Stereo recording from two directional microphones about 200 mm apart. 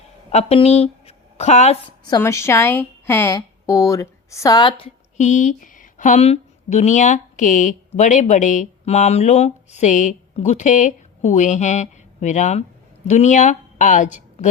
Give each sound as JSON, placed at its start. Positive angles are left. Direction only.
{"t": 0.3, "sound": "speech", "side_deg": 30}
{"t": 2.0, "sound": "a woman's voice", "side_deg": 15}
{"t": 5.1, "sound": "a woman's voice", "side_deg": 35}